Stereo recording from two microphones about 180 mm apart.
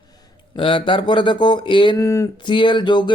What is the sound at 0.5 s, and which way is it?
Speech, 30° left (ahead or behind).